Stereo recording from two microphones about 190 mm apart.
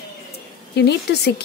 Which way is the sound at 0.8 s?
60° left (ahead or behind).